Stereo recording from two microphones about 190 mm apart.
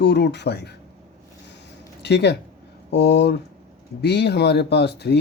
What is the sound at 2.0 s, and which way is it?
Speech, 60° left (ahead or behind).